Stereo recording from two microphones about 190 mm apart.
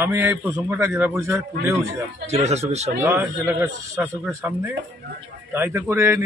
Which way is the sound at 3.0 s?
10° right (ahead or behind).